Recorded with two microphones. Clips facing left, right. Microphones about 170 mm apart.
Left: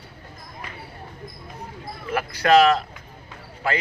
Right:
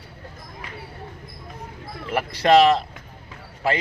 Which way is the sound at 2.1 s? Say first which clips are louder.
Right 1 dB; 25° right (ahead or behind).